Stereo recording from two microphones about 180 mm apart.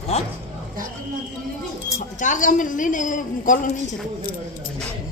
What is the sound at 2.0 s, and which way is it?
A woman's voice, 45° left (ahead or behind).